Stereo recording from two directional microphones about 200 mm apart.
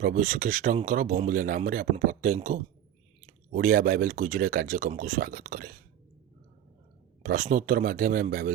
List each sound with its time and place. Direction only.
0.0 s speech: 40° right (ahead or behind)
7.2 s speech: 40° right (ahead or behind)